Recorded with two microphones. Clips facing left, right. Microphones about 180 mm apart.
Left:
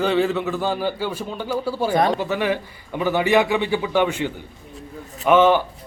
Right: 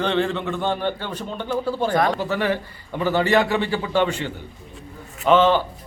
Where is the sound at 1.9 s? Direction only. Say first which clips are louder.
Left 3 dB; 20° left (ahead or behind).